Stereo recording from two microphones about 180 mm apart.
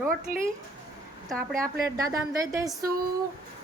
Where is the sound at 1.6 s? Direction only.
20° right (ahead or behind).